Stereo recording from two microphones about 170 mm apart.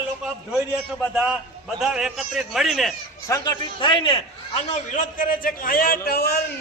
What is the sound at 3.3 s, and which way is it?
A man's voice, 20° left (ahead or behind).